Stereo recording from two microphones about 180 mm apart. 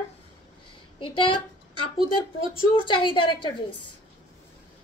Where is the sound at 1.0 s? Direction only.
30° left (ahead or behind).